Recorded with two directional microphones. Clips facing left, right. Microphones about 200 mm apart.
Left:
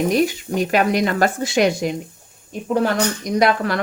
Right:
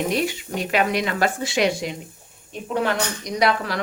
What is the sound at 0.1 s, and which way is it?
Speech, 45° left (ahead or behind).